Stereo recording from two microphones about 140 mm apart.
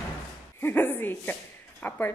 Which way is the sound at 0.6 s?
15° left (ahead or behind).